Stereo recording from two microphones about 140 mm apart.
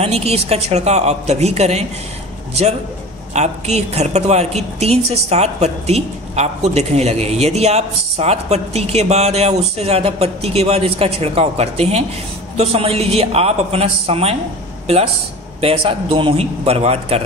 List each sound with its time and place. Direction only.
0.0 s a woman's voice: 45° right (ahead or behind)
3.3 s a woman's voice: 50° right (ahead or behind)
15.6 s a woman's voice: 40° right (ahead or behind)